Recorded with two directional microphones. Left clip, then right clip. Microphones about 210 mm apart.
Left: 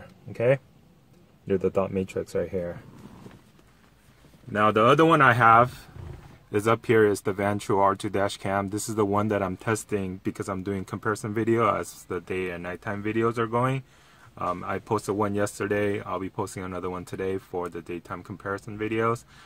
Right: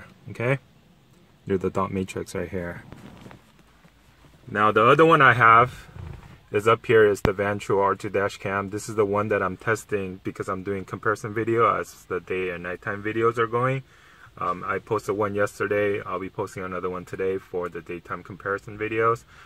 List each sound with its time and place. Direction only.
0.3 s speech: 30° right (ahead or behind)
1.8 s speech: 35° right (ahead or behind)
4.5 s speech: 15° left (ahead or behind)